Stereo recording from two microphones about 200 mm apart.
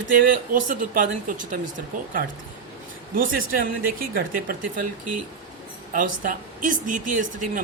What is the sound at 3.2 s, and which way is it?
Speech, 45° right (ahead or behind).